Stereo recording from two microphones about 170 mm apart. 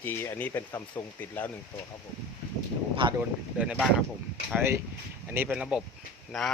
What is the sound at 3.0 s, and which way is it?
Speech, 30° right (ahead or behind).